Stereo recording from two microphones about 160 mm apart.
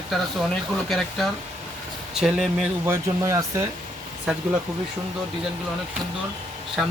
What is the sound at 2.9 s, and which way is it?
Speech, 20° right (ahead or behind).